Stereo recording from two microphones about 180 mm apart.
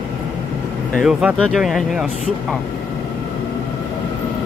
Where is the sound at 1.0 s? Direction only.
5° right (ahead or behind).